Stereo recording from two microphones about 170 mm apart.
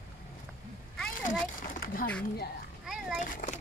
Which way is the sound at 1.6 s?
55° left (ahead or behind).